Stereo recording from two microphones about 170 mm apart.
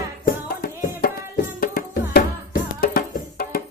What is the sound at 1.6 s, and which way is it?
Music, 60° left (ahead or behind).